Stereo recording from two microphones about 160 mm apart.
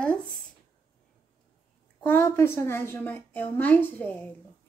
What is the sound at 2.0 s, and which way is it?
A woman's voice, 15° left (ahead or behind).